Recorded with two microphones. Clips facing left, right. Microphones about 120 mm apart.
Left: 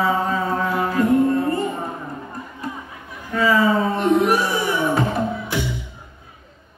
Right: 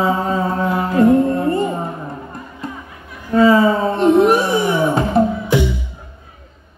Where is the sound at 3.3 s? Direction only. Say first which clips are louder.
Right 6 dB; 30° right (ahead or behind).